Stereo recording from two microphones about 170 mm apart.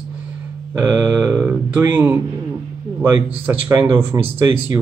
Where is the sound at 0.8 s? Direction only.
10° right (ahead or behind).